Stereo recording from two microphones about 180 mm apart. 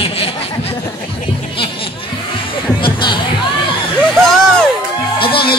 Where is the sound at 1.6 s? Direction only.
30° left (ahead or behind).